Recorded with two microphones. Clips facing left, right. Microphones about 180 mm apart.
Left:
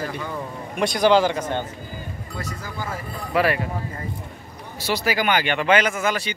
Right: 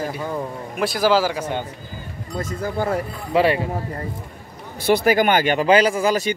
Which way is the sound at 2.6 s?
55° right (ahead or behind).